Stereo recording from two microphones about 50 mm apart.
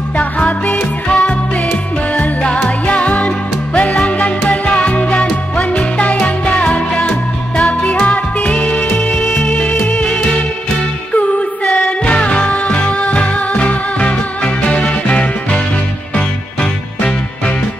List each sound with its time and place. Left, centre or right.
0.2 s music: left; by 9.3 s centre
9.3 s music: left
12.0 s music: left